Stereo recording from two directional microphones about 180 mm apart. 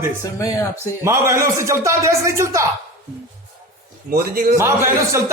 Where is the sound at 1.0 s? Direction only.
15° right (ahead or behind).